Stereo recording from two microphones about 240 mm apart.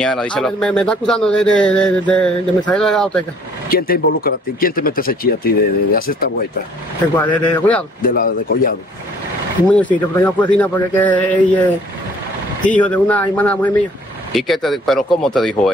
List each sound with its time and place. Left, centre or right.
0.0 s speech: centre
3.6 s speech: left
7.4 s speech: centre
8.1 s speech: left
9.7 s a man's voice: centre
12.6 s a man's voice: centre